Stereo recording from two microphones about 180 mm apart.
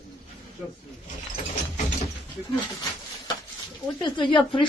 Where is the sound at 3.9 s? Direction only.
25° left (ahead or behind).